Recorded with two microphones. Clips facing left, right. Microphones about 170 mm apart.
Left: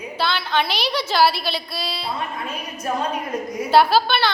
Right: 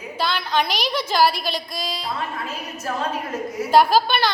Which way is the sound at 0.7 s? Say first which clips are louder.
Even; 45° right (ahead or behind).